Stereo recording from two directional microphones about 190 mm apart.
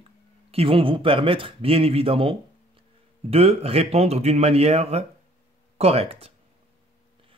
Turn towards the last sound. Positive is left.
turn(degrees=-30)  # may be behind; listen again after turning